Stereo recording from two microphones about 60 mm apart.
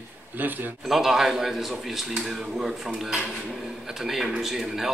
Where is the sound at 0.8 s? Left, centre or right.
Centre.